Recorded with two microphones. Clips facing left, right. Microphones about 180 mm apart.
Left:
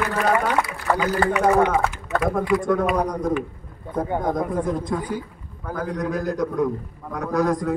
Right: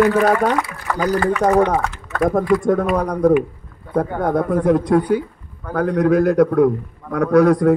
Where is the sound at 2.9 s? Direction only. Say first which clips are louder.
Right 7 dB; 60° right (ahead or behind).